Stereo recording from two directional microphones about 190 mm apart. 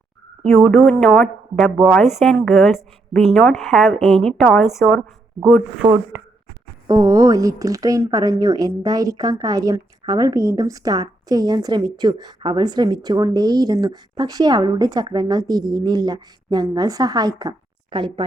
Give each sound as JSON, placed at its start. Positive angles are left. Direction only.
{"t": 0.4, "sound": "a woman's voice", "side_deg": 0}
{"t": 6.1, "sound": "a sound", "side_deg": -10}
{"t": 6.8, "sound": "a woman's voice", "side_deg": -20}